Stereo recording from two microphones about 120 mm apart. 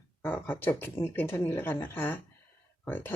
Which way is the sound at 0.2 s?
15° left (ahead or behind).